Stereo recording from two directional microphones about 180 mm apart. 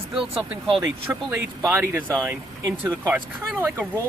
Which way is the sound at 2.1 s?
Centre (ahead or behind).